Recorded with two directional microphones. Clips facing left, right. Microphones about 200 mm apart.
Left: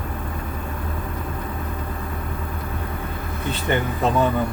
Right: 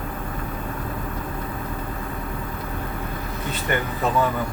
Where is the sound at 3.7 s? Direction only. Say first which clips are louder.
Left 2 dB; 25° left (ahead or behind).